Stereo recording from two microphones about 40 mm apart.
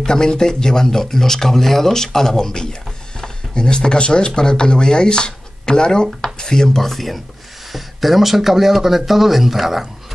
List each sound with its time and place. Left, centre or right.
0.0 s speech: centre